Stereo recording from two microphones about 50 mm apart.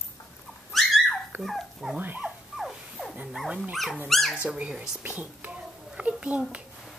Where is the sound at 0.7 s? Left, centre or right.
Centre.